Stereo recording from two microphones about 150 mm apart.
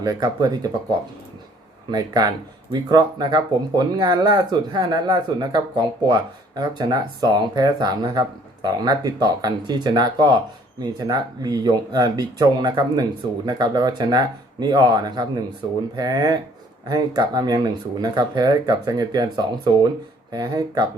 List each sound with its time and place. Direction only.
0.0 s speech: 25° right (ahead or behind)